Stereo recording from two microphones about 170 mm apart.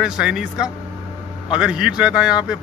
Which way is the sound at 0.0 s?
5° right (ahead or behind).